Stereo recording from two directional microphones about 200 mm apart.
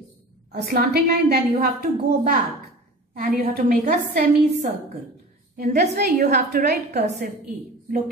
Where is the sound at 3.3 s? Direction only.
45° right (ahead or behind).